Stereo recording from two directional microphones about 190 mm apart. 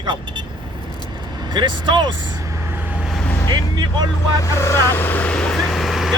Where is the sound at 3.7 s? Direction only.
20° right (ahead or behind).